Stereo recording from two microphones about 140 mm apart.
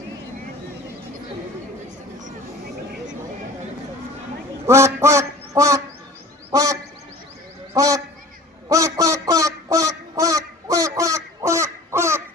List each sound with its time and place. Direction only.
4.6 s quack: 20° right (ahead or behind)
6.5 s a man's voice: 25° right (ahead or behind)
8.7 s a sound: 25° right (ahead or behind)